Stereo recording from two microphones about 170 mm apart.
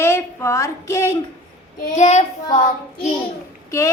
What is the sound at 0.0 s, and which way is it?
A woman's voice, 15° left (ahead or behind).